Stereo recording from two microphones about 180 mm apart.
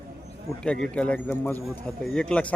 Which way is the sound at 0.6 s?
5° left (ahead or behind).